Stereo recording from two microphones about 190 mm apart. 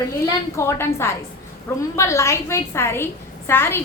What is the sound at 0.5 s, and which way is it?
A woman's voice, 15° left (ahead or behind).